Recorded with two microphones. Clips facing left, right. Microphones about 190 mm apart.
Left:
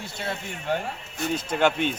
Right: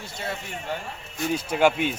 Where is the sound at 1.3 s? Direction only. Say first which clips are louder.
Right 2 dB; 10° right (ahead or behind).